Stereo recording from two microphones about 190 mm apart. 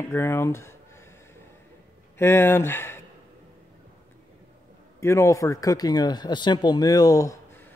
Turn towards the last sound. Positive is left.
turn(degrees=15)  # may be behind; listen again after turning